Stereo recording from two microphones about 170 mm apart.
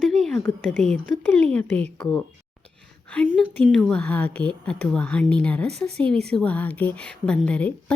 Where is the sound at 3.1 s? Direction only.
5° left (ahead or behind).